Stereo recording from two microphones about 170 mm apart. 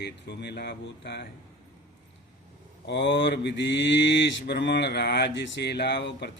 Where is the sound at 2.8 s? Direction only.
90° left.